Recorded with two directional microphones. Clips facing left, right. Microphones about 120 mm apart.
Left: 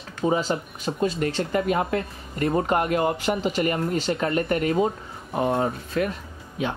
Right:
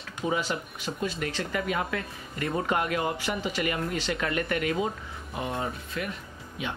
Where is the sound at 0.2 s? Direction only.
35° left (ahead or behind).